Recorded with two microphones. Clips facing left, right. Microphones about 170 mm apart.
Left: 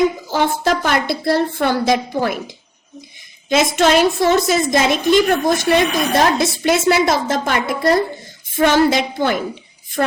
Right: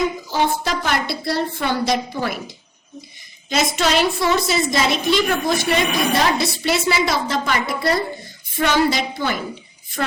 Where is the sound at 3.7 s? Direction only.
50° left (ahead or behind).